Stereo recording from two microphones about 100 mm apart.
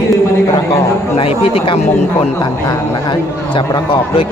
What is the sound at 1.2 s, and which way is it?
Speech, 80° left.